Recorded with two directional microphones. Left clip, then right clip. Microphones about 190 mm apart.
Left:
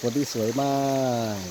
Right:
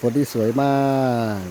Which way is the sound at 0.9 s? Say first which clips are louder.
Right 4 dB; 20° right (ahead or behind).